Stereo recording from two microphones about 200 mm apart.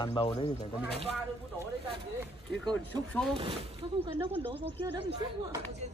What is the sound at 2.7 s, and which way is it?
Speech, 5° left (ahead or behind).